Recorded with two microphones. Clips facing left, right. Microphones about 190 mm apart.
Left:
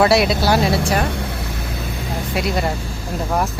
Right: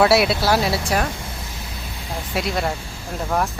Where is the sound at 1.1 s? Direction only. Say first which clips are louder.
Left 7 dB; 65° left (ahead or behind).